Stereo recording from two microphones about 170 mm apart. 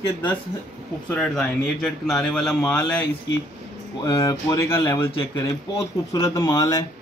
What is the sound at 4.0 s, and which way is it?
Speech, 20° left (ahead or behind).